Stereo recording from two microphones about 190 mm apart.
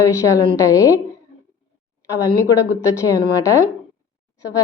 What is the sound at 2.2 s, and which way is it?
A woman's voice, 15° left (ahead or behind).